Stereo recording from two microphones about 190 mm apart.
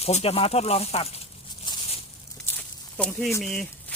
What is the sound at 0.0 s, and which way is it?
Snake, 30° left (ahead or behind).